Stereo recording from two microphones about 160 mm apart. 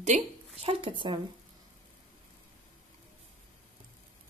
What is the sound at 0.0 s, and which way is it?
Speech, 40° right (ahead or behind).